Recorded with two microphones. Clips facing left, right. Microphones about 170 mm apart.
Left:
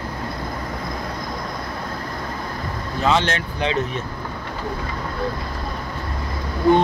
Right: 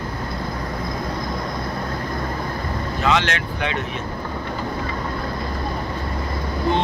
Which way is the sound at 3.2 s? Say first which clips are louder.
Left 2 dB; 30° left (ahead or behind).